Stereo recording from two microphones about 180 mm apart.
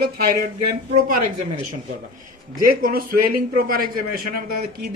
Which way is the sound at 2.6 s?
55° right (ahead or behind).